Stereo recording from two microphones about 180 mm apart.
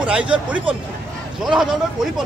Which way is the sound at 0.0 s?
5° right (ahead or behind).